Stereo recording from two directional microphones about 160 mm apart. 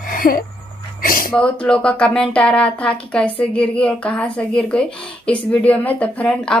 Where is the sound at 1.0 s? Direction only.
60° left (ahead or behind).